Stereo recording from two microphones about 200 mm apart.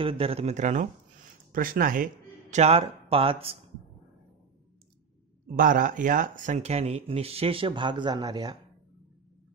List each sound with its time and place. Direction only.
0.0 s speech: 25° right (ahead or behind); by 2.0 s 45° right (ahead or behind)
2.5 s speech: 30° right (ahead or behind)
5.5 s speech: 45° right (ahead or behind); by 8.5 s 20° right (ahead or behind)